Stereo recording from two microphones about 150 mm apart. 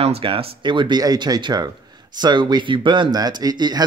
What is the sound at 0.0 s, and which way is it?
Speech, 40° right (ahead or behind).